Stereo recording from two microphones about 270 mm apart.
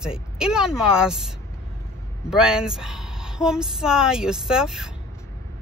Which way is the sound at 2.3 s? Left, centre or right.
Centre.